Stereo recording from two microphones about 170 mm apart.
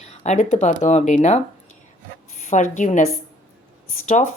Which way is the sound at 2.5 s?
45° left (ahead or behind).